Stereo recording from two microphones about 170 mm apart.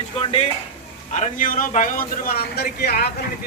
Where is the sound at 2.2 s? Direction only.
60° left (ahead or behind).